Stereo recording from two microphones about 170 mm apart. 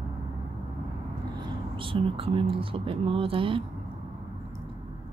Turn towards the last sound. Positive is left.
turn(degrees=-30)  # may be behind; listen again after turning